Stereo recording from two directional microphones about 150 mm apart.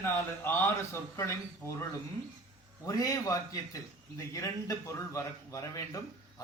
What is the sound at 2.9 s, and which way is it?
Speech, 25° left (ahead or behind).